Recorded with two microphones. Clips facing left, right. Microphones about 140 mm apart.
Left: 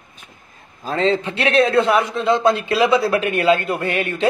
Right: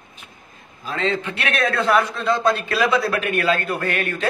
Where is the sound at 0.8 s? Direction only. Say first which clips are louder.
Left 5 dB; 35° left (ahead or behind).